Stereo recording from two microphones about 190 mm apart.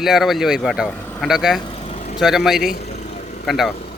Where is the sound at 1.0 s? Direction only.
10° left (ahead or behind).